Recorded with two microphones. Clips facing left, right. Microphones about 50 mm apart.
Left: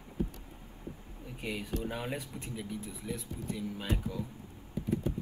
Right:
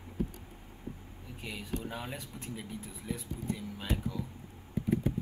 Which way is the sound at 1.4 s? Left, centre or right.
Centre.